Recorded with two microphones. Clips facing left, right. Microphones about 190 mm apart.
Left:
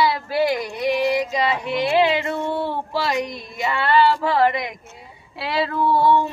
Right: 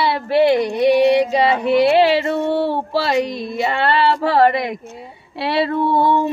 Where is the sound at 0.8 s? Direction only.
70° right (ahead or behind).